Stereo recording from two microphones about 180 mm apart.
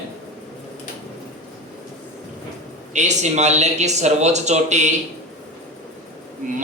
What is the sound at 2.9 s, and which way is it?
Speech, 40° right (ahead or behind).